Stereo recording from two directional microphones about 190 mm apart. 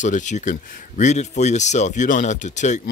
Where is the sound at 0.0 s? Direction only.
40° left (ahead or behind).